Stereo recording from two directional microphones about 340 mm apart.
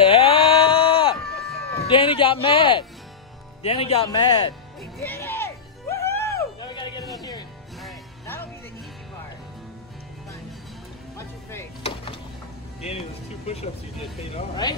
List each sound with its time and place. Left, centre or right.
0.0 s a sound: centre
1.9 s speech: centre
4.9 s music: centre
11.1 s music: centre